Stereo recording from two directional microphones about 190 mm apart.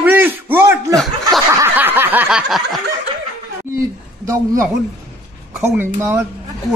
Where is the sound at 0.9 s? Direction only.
Centre (ahead or behind).